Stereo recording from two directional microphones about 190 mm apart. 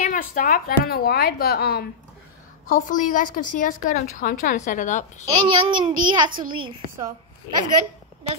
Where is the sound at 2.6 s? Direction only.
45° left (ahead or behind).